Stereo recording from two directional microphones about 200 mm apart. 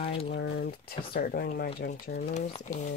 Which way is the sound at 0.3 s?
55° left (ahead or behind).